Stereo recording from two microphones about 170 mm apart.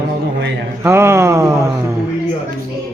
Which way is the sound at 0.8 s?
15° right (ahead or behind).